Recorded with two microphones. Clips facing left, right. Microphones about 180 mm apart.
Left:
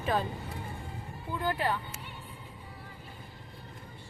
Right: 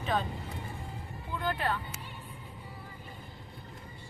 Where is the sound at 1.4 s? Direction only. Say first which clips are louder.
Left 2 dB; 10° left (ahead or behind).